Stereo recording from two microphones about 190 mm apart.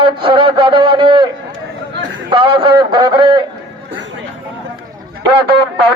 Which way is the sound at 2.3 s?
25° right (ahead or behind).